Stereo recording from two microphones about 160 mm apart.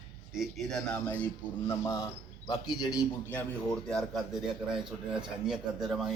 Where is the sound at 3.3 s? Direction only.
5° left (ahead or behind).